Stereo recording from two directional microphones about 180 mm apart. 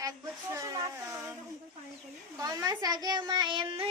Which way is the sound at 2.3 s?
20° right (ahead or behind).